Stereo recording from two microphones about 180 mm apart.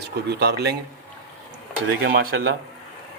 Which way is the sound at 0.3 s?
65° right (ahead or behind).